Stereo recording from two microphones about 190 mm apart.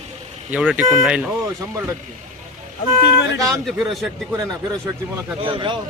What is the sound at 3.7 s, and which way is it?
Speech, centre (ahead or behind).